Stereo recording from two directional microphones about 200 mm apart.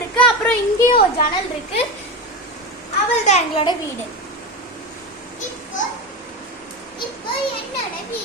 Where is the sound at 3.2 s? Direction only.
35° left (ahead or behind).